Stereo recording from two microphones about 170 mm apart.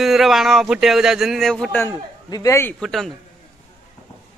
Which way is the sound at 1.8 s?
20° left (ahead or behind).